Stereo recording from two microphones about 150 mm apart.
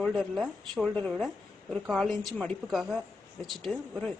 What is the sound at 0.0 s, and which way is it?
Speech, centre (ahead or behind).